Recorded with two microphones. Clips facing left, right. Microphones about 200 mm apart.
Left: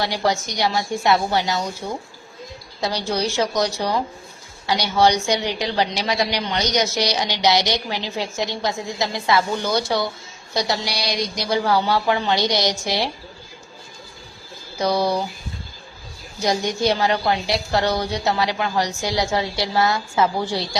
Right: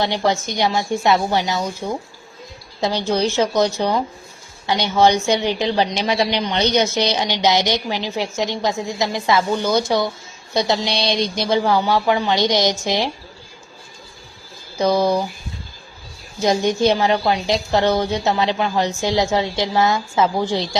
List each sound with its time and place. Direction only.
0.0 s a woman's voice: 25° right (ahead or behind)
3.2 s a woman's voice: 20° right (ahead or behind)
14.8 s a woman's voice: 20° right (ahead or behind)
16.4 s a woman's voice: 20° right (ahead or behind)